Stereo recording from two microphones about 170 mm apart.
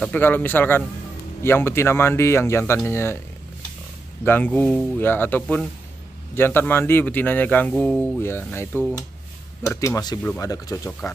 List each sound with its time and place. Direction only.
0.0 s speech: 10° left (ahead or behind)
4.2 s speech: 10° left (ahead or behind)
8.2 s speech: 15° left (ahead or behind)